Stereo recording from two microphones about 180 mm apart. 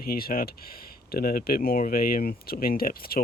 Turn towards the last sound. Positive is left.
turn(degrees=55)  # may be behind; listen again after turning